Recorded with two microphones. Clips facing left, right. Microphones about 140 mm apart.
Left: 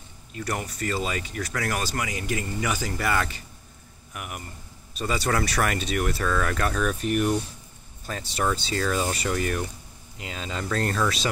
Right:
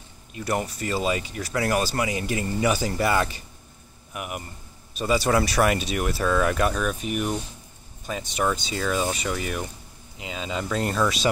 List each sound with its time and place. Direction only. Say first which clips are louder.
0.3 s speech: right 4 dB; 20° right (ahead or behind)